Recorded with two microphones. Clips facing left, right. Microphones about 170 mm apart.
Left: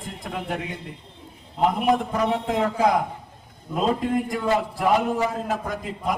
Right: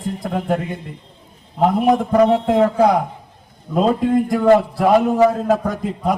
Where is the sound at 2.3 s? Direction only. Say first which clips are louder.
Right 8 dB; 50° right (ahead or behind).